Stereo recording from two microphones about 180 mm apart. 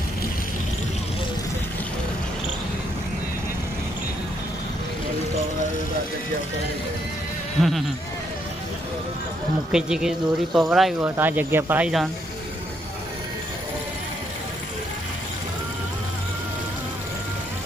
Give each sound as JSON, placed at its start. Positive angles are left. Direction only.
{"t": 7.6, "sound": "speech", "side_deg": 0}
{"t": 9.7, "sound": "speech", "side_deg": -5}